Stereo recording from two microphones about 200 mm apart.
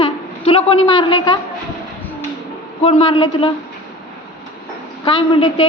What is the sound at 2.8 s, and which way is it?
Speech, 25° left (ahead or behind).